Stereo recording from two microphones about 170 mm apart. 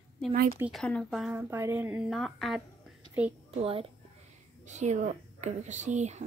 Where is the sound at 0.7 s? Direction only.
5° left (ahead or behind).